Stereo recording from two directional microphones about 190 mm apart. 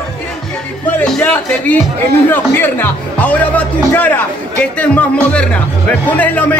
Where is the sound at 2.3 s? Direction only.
10° left (ahead or behind).